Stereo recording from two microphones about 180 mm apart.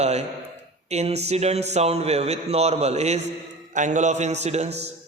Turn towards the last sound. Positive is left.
turn(degrees=-40)  # may be behind; listen again after turning